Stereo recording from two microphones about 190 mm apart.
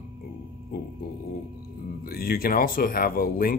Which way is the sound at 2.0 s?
50° left (ahead or behind).